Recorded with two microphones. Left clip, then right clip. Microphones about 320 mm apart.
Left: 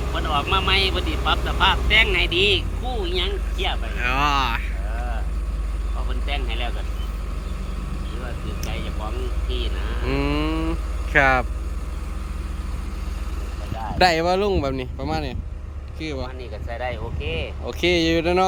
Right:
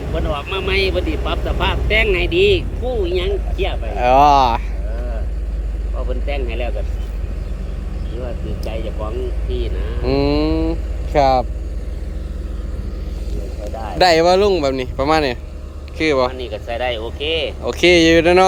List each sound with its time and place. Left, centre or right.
0.3 s speech: centre
6.2 s speech: centre
9.5 s speech: centre
14.0 s speech: centre
16.4 s speech: right
17.7 s speech: centre